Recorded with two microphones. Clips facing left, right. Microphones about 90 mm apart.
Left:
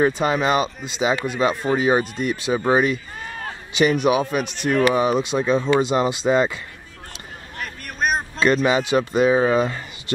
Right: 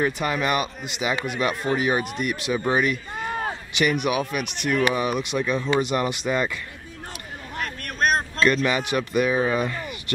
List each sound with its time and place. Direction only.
0.0 s speech: 25° left (ahead or behind)
4.0 s speech: 25° left (ahead or behind)
7.6 s vehicle: centre (ahead or behind)
8.6 s speech: 25° left (ahead or behind)